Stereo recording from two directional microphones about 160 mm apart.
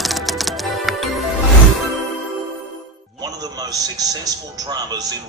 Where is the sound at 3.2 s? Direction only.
25° right (ahead or behind).